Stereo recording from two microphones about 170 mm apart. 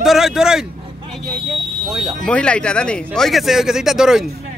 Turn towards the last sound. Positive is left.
turn(degrees=-5)  # may be behind; listen again after turning